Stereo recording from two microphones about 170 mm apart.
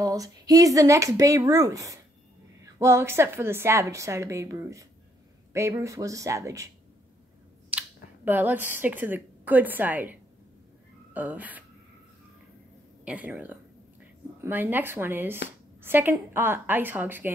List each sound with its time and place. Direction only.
0.0 s a woman's voice: 20° right (ahead or behind)
7.7 s a sound: 10° right (ahead or behind)
8.3 s a woman's voice: 10° right (ahead or behind)
11.1 s a woman's voice: 10° right (ahead or behind)
13.0 s a woman's voice: 10° right (ahead or behind)